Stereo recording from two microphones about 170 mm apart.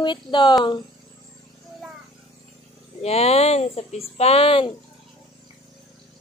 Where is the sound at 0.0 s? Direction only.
25° left (ahead or behind).